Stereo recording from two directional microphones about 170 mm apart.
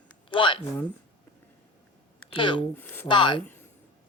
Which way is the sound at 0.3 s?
30° left (ahead or behind).